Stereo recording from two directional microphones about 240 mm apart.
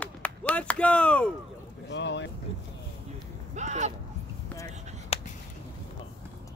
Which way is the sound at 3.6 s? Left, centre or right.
Right.